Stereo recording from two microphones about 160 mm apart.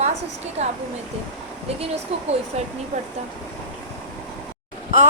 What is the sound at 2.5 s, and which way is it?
Speech, 45° right (ahead or behind).